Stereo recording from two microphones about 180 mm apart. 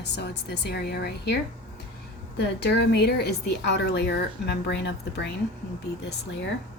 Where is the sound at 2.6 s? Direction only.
65° left (ahead or behind).